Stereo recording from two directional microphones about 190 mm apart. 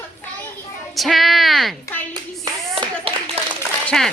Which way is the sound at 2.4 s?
20° right (ahead or behind).